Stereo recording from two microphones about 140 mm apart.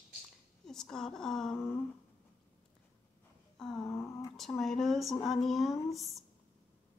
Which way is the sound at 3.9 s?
20° left (ahead or behind).